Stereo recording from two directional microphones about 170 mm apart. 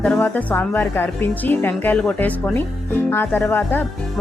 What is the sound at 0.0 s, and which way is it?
Speech, 10° left (ahead or behind).